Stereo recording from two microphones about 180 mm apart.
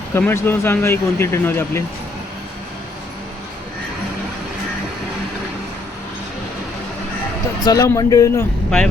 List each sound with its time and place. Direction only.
0.1 s speech: 10° left (ahead or behind)
7.6 s a man's voice: 20° left (ahead or behind)